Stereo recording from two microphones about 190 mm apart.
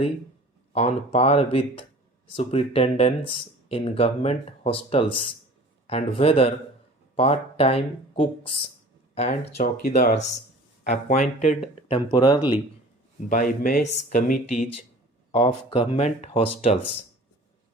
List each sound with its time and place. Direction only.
0.7 s speech: 35° left (ahead or behind)
9.8 s speech: 50° left (ahead or behind); by 12.4 s 20° left (ahead or behind)
13.2 s speech: 45° left (ahead or behind)